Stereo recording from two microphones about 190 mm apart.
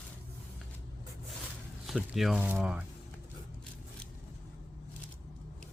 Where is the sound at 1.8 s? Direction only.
Centre (ahead or behind).